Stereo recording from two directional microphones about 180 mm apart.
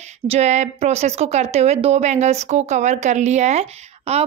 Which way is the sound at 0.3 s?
40° right (ahead or behind).